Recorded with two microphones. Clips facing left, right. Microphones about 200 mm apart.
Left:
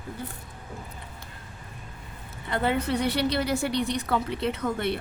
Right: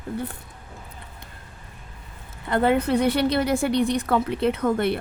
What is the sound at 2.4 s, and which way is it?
A woman's voice, 50° right (ahead or behind).